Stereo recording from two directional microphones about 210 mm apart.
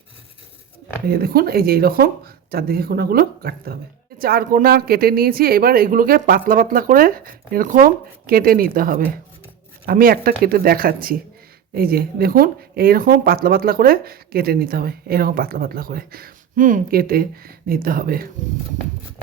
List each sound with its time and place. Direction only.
1.0 s speech: 45° right (ahead or behind)